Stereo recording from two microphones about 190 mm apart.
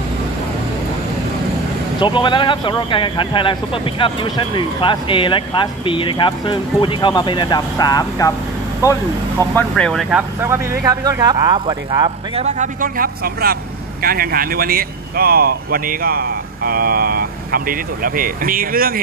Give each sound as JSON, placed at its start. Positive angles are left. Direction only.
{"t": 2.0, "sound": "speech", "side_deg": 25}
{"t": 9.6, "sound": "speech", "side_deg": 5}
{"t": 10.4, "sound": "speech", "side_deg": -15}